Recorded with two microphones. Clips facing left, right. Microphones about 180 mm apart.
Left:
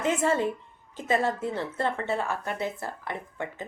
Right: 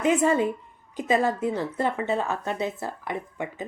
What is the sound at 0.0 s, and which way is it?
Speech, 15° right (ahead or behind).